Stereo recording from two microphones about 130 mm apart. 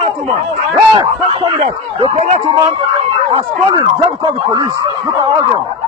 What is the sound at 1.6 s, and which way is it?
Speech, 55° right (ahead or behind).